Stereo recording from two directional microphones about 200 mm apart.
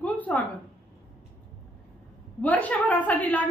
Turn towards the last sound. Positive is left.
turn(degrees=10)  # may be behind; listen again after turning